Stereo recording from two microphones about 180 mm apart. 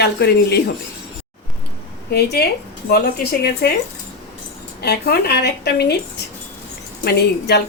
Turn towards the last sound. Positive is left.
turn(degrees=65)  # may be behind; listen again after turning